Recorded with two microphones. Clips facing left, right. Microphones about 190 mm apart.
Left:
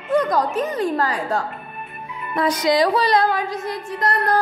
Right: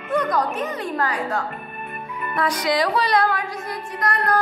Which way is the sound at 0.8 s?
35° left (ahead or behind).